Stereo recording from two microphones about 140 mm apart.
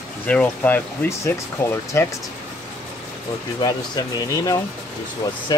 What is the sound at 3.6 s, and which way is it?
Speech, 30° left (ahead or behind).